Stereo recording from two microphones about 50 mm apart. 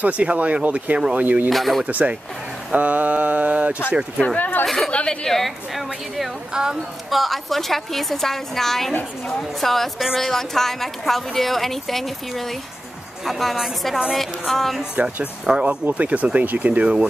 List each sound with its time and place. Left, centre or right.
0.0 s speech: right
1.1 s mantra: right
1.5 s speech: centre
1.9 s speech: right
2.7 s mantra: right
4.4 s speech: left
4.6 s speech: centre
4.9 s a woman's voice: centre
5.4 s speech: centre
6.5 s a woman's voice: centre
7.1 s speech: centre
15.0 s mantra: right
15.4 s speech: centre